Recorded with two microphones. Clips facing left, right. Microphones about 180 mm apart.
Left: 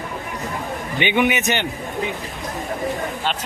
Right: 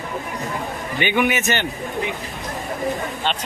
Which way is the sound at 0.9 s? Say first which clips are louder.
Left 1 dB; 20° left (ahead or behind).